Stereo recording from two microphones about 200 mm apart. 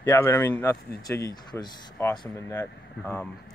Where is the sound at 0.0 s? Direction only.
10° left (ahead or behind).